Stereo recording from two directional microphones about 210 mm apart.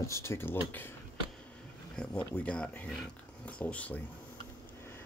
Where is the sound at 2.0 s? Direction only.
5° left (ahead or behind).